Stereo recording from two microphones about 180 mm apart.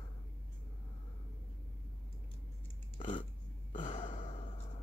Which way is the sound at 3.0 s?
30° left (ahead or behind).